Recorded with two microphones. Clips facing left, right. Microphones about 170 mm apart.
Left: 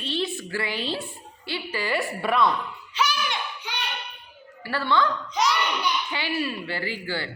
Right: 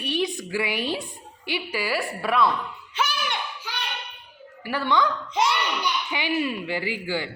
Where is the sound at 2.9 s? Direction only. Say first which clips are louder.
Left 1 dB; 55° right (ahead or behind).